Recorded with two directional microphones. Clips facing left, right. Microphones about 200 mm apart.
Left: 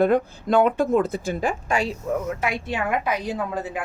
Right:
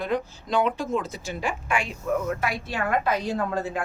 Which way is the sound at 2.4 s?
20° left (ahead or behind).